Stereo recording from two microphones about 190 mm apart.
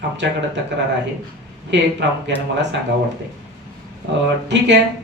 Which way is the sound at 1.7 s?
70° right (ahead or behind).